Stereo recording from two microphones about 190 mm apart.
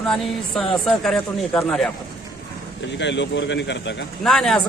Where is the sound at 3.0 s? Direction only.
70° left (ahead or behind).